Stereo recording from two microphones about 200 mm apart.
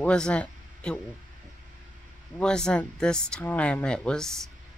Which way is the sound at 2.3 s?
5° left (ahead or behind).